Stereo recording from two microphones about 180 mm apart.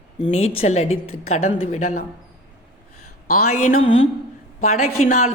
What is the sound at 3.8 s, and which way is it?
Speech, 90° left.